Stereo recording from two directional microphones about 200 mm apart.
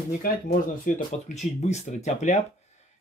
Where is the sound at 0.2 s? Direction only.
40° left (ahead or behind).